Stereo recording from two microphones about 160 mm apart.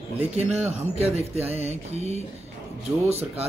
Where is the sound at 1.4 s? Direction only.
40° right (ahead or behind).